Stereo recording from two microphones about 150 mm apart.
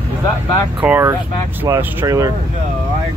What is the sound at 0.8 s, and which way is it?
Speech, 10° right (ahead or behind).